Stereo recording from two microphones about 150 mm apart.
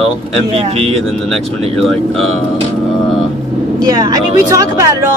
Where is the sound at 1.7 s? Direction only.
Centre (ahead or behind).